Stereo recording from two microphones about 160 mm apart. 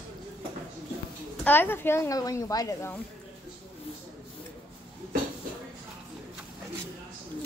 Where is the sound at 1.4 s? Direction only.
10° left (ahead or behind).